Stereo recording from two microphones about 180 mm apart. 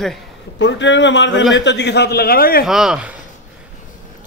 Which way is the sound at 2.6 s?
5° right (ahead or behind).